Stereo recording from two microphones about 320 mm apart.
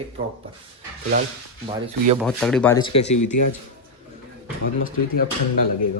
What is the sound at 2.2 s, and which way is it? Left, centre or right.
Speech, centre.